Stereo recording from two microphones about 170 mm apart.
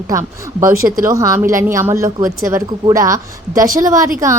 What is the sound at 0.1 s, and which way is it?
Speech, 20° right (ahead or behind).